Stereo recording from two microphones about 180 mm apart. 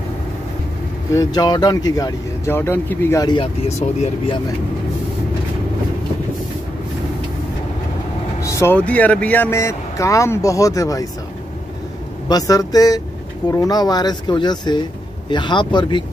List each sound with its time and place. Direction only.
1.1 s speech: 20° left (ahead or behind)
3.6 s speech: 35° left (ahead or behind)
8.4 s speech: 15° left (ahead or behind)
12.3 s speech: 20° left (ahead or behind)